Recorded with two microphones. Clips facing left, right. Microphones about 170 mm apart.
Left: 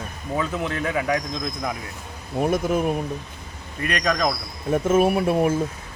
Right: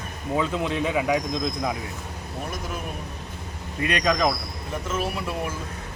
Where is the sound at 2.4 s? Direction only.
55° left (ahead or behind).